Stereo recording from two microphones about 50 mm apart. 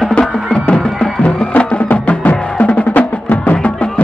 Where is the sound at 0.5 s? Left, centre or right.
Left.